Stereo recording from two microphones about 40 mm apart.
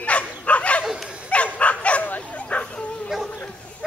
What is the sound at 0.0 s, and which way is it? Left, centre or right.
Bow-wow, left.